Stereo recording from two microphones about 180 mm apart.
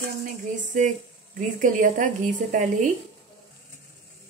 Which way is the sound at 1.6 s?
45° right (ahead or behind).